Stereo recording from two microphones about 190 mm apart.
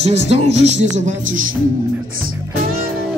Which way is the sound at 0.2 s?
65° left (ahead or behind).